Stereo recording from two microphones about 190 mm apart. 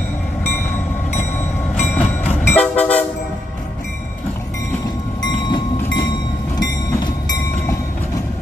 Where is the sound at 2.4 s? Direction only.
10° left (ahead or behind).